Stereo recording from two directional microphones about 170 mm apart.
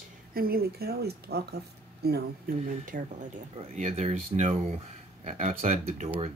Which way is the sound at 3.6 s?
40° right (ahead or behind).